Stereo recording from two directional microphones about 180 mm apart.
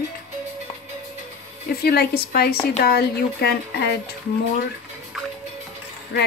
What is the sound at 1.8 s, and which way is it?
Speech, 60° left (ahead or behind).